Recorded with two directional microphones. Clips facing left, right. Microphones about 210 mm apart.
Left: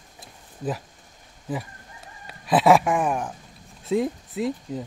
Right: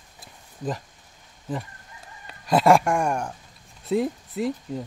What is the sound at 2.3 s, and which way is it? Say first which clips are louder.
Speech: even; centre (ahead or behind).